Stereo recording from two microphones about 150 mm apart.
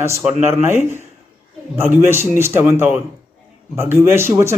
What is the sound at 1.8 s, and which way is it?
A man's voice, 15° right (ahead or behind).